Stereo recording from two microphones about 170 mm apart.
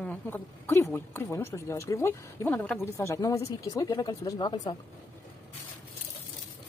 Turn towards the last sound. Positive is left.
turn(degrees=25)  # may be behind; listen again after turning